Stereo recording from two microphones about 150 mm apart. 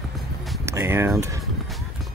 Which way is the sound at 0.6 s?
20° right (ahead or behind).